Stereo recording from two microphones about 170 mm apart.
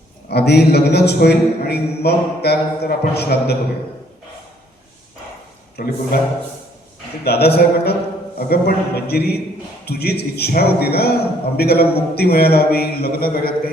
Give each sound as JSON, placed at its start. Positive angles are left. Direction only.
{"t": 0.3, "sound": "a man's voice", "side_deg": 75}
{"t": 5.7, "sound": "speech", "side_deg": 65}
{"t": 7.3, "sound": "a man's voice", "side_deg": 70}